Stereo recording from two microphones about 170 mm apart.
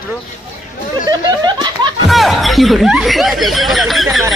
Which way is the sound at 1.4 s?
25° right (ahead or behind).